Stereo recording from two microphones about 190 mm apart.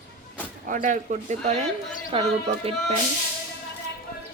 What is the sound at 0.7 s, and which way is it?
Speech, 45° right (ahead or behind).